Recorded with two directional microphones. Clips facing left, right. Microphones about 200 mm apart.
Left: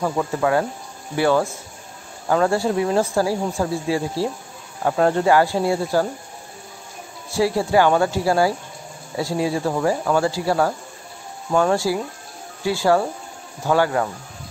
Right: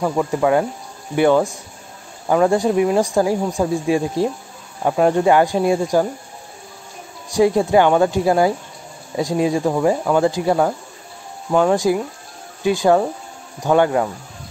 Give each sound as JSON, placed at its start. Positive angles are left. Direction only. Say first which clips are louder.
{"t": 0.0, "sound": "speech", "louder": "right 3 dB", "side_deg": -10}
{"t": 7.2, "sound": "speech", "louder": "right 5 dB", "side_deg": -20}